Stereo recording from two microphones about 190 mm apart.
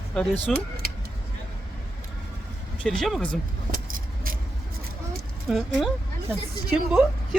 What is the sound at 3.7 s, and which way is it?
Keys jangling, 50° right (ahead or behind).